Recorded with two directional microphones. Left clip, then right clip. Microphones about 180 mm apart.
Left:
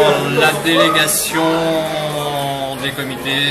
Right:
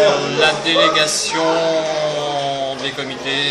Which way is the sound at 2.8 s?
5° right (ahead or behind).